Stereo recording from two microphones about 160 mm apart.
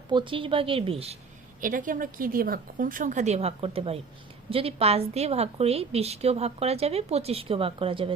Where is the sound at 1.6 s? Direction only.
55° right (ahead or behind).